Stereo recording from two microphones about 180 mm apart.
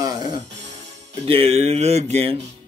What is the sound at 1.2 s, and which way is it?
Speech, 35° right (ahead or behind).